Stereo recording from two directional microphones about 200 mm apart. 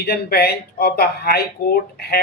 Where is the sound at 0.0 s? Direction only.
50° left (ahead or behind).